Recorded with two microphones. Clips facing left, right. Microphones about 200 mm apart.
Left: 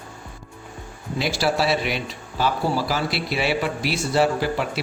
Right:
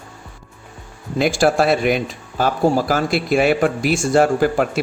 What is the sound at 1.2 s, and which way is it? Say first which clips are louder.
Speech: right 7 dB; 50° right (ahead or behind).